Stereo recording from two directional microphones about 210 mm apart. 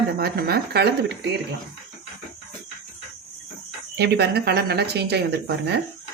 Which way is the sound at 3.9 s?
50° right (ahead or behind).